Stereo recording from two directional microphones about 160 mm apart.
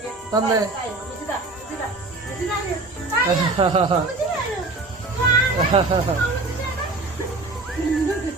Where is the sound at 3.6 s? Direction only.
35° right (ahead or behind).